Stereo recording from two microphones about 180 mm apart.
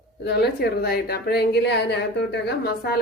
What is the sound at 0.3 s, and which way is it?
A woman's voice, 65° left (ahead or behind).